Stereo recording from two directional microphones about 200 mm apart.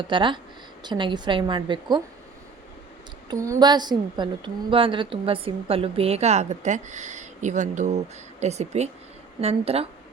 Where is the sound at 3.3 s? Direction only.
20° right (ahead or behind).